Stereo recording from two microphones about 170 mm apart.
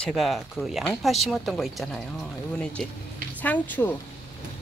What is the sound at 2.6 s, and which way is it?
Cricket, 5° left (ahead or behind).